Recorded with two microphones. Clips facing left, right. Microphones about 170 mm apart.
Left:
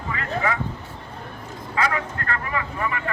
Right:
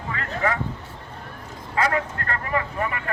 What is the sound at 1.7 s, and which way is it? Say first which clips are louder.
Speech: right 2 dB; 45° right (ahead or behind).